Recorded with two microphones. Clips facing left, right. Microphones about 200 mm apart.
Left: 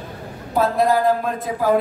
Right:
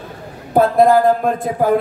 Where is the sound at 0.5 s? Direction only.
50° right (ahead or behind).